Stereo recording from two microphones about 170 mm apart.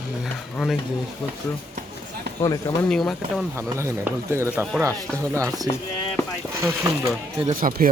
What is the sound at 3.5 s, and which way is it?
Speech, 15° right (ahead or behind).